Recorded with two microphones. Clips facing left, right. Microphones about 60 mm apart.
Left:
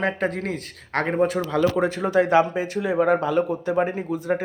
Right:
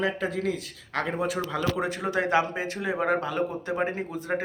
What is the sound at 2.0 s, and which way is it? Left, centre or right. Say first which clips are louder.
A man's voice: left 6 dB; left.